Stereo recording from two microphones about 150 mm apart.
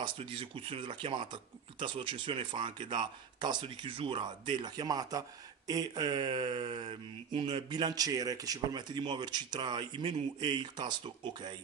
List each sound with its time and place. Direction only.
0.0 s speech: 40° right (ahead or behind)